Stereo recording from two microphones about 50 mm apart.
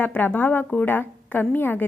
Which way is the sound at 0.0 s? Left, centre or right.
Left.